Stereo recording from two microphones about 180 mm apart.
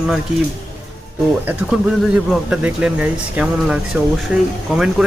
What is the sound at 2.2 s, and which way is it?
Speech, 5° right (ahead or behind).